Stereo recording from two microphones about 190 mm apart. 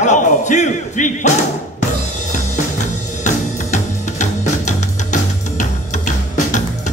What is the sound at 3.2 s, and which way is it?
Music, 40° left (ahead or behind).